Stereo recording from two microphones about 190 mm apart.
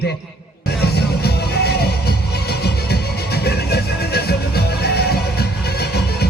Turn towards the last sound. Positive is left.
turn(degrees=55)  # may be behind; listen again after turning